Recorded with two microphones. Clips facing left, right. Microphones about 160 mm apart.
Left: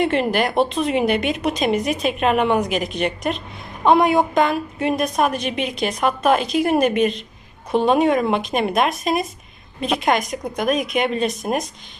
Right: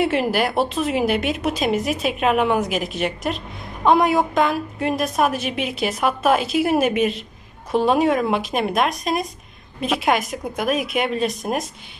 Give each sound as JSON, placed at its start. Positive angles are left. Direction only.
{"t": 0.0, "sound": "a woman's voice", "side_deg": -5}